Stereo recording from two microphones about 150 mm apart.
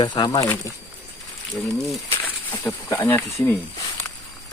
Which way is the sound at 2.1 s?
15° left (ahead or behind).